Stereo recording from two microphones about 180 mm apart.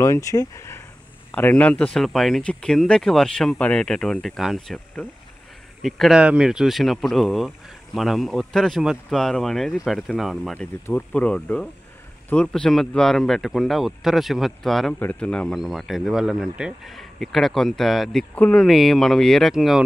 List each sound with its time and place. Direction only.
0.0 s speech: 15° left (ahead or behind); by 19.8 s centre (ahead or behind)